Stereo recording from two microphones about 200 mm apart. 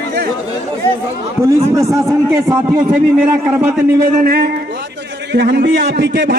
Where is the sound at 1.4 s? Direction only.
15° right (ahead or behind).